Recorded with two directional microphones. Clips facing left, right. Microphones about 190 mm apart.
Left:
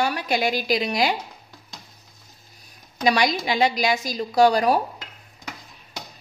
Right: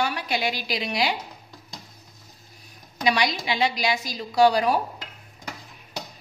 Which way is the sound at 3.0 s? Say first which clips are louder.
Left 3 dB; 45° left (ahead or behind).